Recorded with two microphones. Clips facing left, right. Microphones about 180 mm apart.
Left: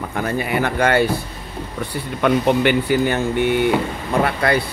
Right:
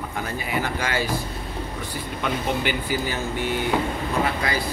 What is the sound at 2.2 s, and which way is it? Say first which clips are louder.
Speech: left 10 dB; 65° left (ahead or behind).